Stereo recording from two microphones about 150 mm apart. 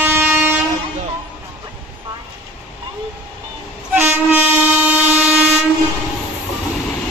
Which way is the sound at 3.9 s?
15° right (ahead or behind).